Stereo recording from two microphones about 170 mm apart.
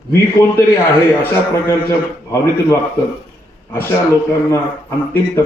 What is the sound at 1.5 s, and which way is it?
A man's voice, 15° left (ahead or behind).